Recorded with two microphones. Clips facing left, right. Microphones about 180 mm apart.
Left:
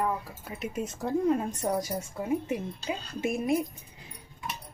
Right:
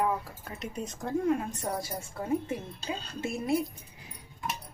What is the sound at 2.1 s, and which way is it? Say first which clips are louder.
A woman's voice: even; 15° left (ahead or behind).